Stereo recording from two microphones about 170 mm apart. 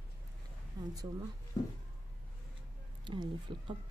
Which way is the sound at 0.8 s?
25° right (ahead or behind).